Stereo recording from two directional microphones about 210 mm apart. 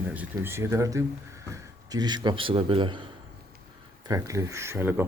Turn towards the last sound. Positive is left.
turn(degrees=-10)  # may be behind; listen again after turning